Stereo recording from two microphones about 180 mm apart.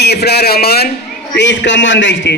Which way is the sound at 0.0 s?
65° left (ahead or behind).